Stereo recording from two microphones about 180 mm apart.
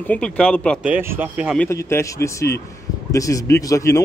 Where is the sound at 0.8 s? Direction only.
10° right (ahead or behind).